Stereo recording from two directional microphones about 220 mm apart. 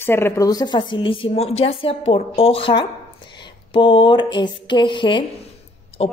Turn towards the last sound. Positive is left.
turn(degrees=25)  # may be behind; listen again after turning